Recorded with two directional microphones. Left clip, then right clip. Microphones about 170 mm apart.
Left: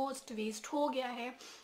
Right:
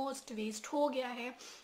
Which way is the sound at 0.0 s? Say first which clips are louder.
Left 1 dB; centre (ahead or behind).